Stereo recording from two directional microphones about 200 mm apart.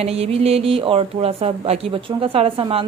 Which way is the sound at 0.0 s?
30° right (ahead or behind).